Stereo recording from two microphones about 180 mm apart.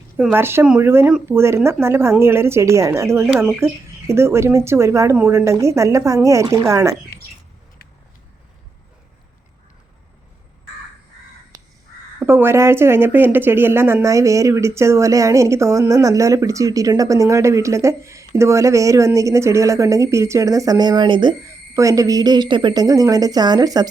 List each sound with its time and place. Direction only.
0.2 s speech: 10° right (ahead or behind)
11.5 s crow: 20° right (ahead or behind)
12.2 s a woman's voice: 10° right (ahead or behind)